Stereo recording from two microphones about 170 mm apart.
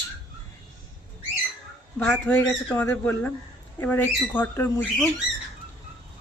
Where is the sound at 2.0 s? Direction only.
5° left (ahead or behind).